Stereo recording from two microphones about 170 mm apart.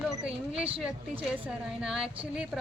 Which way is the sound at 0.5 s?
35° right (ahead or behind).